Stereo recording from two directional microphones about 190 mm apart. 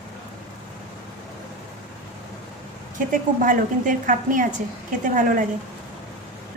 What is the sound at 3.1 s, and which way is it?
A woman's voice, 45° right (ahead or behind).